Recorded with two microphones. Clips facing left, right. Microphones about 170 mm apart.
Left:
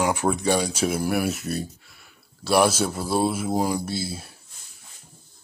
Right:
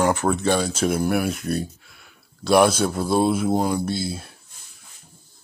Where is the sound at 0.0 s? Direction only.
10° left (ahead or behind).